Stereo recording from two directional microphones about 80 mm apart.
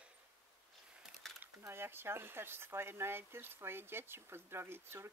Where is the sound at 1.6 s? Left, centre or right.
Right.